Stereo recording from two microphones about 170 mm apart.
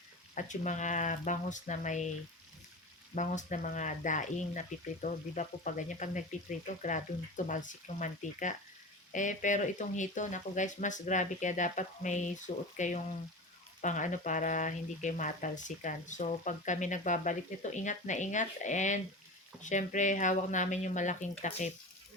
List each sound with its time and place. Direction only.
0.3 s speech: 45° left (ahead or behind)
3.2 s speech: 45° left (ahead or behind)